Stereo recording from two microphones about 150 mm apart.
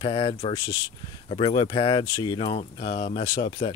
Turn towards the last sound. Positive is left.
turn(degrees=35)  # may be behind; listen again after turning